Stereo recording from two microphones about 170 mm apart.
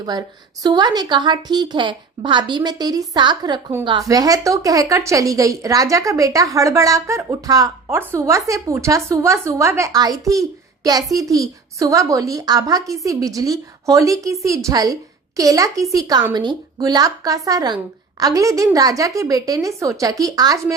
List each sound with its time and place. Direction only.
0.0 s a woman's voice: 25° right (ahead or behind)